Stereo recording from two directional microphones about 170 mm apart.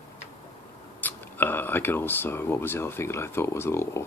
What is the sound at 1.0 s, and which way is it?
Speech, 10° left (ahead or behind).